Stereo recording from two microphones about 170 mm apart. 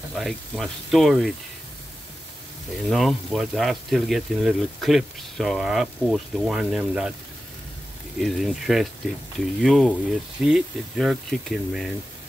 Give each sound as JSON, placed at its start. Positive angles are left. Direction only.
{"t": 0.1, "sound": "speech", "side_deg": 0}
{"t": 2.9, "sound": "speech", "side_deg": 0}
{"t": 8.2, "sound": "speech", "side_deg": 0}